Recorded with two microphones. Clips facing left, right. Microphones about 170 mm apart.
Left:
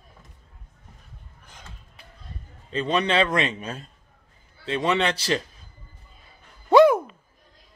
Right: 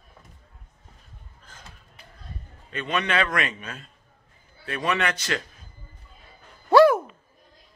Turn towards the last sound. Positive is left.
turn(degrees=15)  # may be behind; listen again after turning